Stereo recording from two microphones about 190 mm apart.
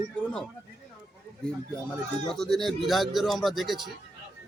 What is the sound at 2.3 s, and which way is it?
Speech, centre (ahead or behind).